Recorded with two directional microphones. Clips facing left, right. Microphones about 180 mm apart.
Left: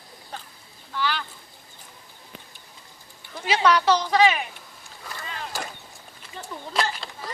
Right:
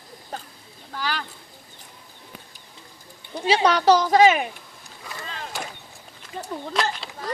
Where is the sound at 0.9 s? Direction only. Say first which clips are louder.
Left 2 dB; 45° right (ahead or behind).